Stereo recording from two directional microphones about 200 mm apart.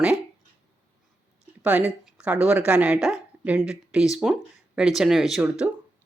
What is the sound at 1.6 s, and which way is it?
Speech, 5° right (ahead or behind).